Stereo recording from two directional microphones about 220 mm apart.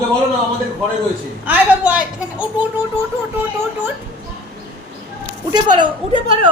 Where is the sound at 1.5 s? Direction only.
5° right (ahead or behind).